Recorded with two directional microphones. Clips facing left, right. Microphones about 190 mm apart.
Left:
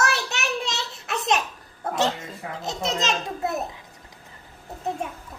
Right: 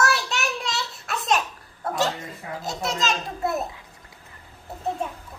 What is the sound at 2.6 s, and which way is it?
Speech, 20° left (ahead or behind).